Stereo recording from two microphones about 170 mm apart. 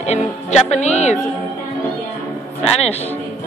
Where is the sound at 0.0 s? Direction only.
40° left (ahead or behind).